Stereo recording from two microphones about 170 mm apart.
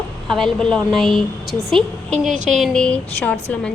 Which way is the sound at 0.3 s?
5° left (ahead or behind).